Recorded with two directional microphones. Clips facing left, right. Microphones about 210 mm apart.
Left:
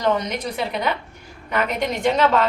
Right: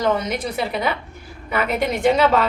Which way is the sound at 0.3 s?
10° right (ahead or behind).